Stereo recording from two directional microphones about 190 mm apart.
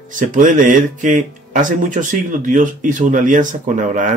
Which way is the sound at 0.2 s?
40° right (ahead or behind).